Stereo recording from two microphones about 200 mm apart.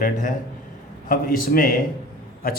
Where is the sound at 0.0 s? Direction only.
40° left (ahead or behind).